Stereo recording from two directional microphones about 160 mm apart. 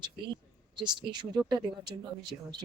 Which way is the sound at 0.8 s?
30° right (ahead or behind).